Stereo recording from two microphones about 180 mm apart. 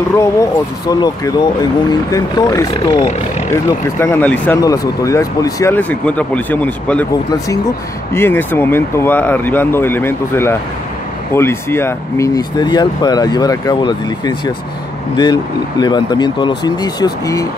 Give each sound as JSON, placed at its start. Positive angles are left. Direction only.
{"t": 0.1, "sound": "speech", "side_deg": 15}
{"t": 2.7, "sound": "speech", "side_deg": 35}
{"t": 4.0, "sound": "speech", "side_deg": 10}
{"t": 15.8, "sound": "speech", "side_deg": 25}